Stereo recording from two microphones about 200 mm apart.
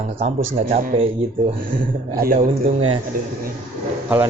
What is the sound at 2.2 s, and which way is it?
Speech, 40° right (ahead or behind).